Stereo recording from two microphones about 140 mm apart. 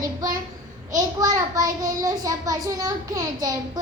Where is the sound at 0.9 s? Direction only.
25° right (ahead or behind).